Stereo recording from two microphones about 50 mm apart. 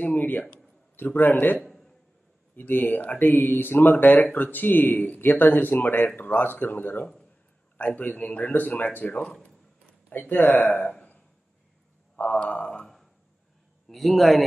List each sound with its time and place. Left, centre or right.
0.0 s a man's voice: left
12.3 s speech: left
12.8 s a sound: centre
13.8 s a man's voice: centre